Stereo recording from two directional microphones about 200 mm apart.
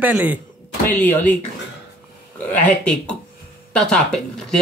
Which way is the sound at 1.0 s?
10° left (ahead or behind).